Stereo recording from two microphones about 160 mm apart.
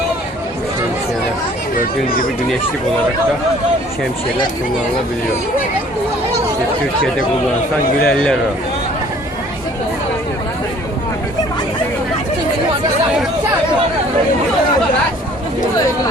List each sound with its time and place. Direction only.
1.7 s speech: 65° left (ahead or behind)
8.0 s a man's voice: 5° left (ahead or behind)